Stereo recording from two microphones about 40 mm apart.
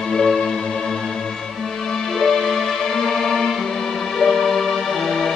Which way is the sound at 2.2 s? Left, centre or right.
Centre.